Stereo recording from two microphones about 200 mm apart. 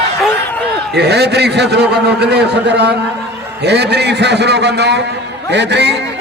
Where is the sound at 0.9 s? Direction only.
55° right (ahead or behind).